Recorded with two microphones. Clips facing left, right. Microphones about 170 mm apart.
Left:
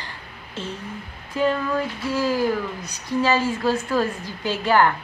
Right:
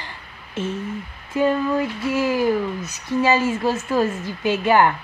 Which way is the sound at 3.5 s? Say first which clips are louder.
Right 1 dB; 20° right (ahead or behind).